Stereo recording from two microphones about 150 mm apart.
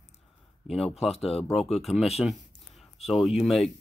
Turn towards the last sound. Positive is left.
turn(degrees=0)  # may be behind; listen again after turning